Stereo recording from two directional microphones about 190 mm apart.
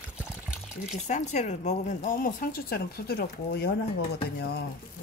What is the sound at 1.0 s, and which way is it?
Speech, 40° left (ahead or behind).